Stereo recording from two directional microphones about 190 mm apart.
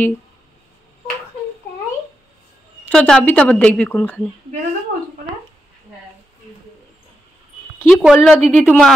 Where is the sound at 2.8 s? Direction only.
5° left (ahead or behind).